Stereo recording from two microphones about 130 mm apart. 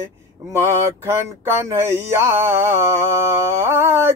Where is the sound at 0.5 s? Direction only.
20° right (ahead or behind).